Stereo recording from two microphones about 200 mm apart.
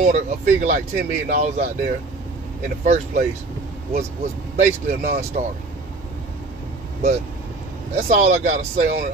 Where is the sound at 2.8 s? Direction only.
35° right (ahead or behind).